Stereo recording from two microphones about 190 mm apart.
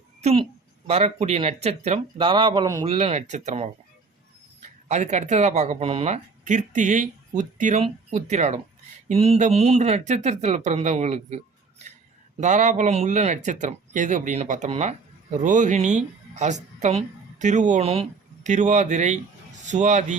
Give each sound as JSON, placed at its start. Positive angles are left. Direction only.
{"t": 0.2, "sound": "a woman's voice", "side_deg": -35}
{"t": 2.8, "sound": "speech", "side_deg": -30}
{"t": 12.4, "sound": "speech", "side_deg": -40}